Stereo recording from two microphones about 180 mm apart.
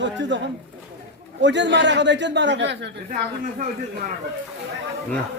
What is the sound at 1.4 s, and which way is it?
A man's voice, 80° right.